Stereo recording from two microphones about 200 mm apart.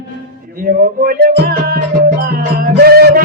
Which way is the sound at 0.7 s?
50° right (ahead or behind).